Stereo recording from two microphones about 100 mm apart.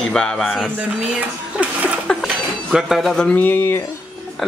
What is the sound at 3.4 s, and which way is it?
Speech, 20° left (ahead or behind).